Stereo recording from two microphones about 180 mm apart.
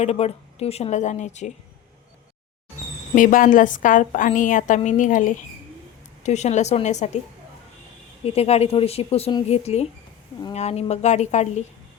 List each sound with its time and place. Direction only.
0.0 s speech: 35° left (ahead or behind)
3.2 s a woman's voice: 50° left (ahead or behind)
8.2 s speech: 35° left (ahead or behind)